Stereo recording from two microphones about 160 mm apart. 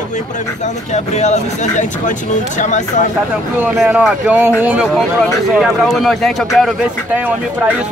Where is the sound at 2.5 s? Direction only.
50° left (ahead or behind).